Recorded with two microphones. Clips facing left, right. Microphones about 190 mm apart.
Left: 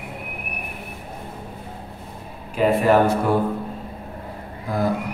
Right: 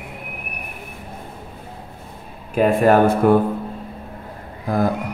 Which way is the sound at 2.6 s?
50° right (ahead or behind).